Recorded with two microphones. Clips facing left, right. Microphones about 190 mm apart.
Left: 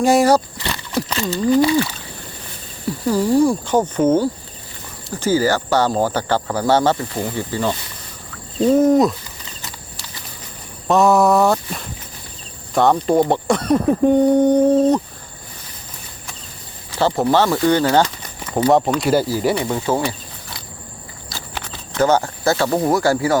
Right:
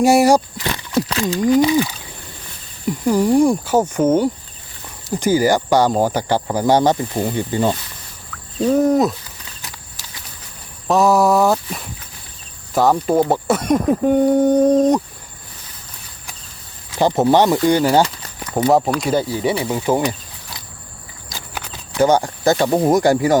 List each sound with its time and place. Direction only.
0.0 s speech: 10° right (ahead or behind)
1.0 s speech: 5° right (ahead or behind)
3.1 s speech: 15° right (ahead or behind)
8.6 s speech: centre (ahead or behind)
10.8 s speech: centre (ahead or behind)
17.0 s speech: 20° right (ahead or behind)
18.5 s speech: centre (ahead or behind)
19.8 s speech: 15° right (ahead or behind)
21.5 s speech: 10° right (ahead or behind)